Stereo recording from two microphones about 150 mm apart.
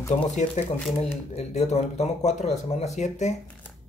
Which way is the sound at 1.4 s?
50° left (ahead or behind).